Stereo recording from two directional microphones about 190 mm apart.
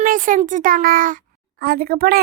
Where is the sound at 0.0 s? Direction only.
45° right (ahead or behind).